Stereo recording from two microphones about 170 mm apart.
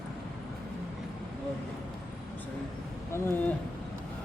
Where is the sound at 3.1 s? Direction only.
15° left (ahead or behind).